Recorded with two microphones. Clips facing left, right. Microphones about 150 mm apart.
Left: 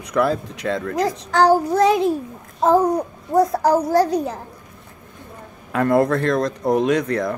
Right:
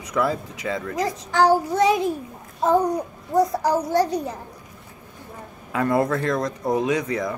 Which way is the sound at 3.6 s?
Centre (ahead or behind).